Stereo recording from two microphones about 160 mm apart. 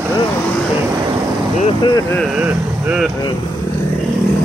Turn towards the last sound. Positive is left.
turn(degrees=-5)  # may be behind; listen again after turning